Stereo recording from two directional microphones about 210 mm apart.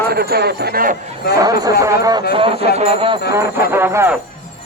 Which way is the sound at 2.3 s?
25° right (ahead or behind).